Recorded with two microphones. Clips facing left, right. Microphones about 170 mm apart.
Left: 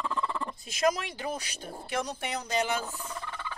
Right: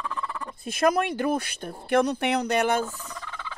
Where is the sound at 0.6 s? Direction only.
55° right (ahead or behind).